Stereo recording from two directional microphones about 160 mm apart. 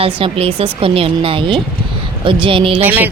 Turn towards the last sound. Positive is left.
turn(degrees=-10)  # may be behind; listen again after turning